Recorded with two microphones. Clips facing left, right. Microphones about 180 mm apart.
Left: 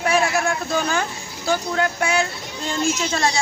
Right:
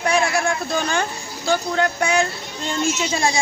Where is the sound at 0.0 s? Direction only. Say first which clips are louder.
Even; 5° left (ahead or behind).